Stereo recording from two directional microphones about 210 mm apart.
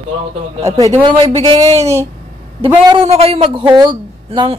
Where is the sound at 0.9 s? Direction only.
25° right (ahead or behind).